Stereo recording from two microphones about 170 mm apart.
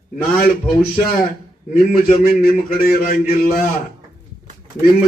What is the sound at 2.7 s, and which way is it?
Speech, 60° left (ahead or behind).